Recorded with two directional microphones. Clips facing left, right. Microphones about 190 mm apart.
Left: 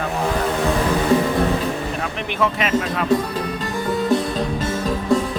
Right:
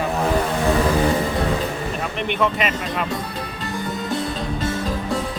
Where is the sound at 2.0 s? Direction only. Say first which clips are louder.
Right 4 dB; centre (ahead or behind).